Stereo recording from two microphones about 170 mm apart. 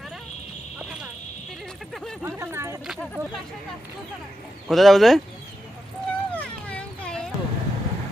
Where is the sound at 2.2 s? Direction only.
15° right (ahead or behind).